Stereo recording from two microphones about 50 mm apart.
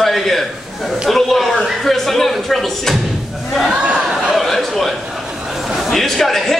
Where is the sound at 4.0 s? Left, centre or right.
Centre.